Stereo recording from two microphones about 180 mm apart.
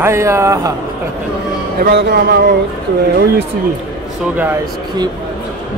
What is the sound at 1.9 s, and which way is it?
Speech, 65° right (ahead or behind).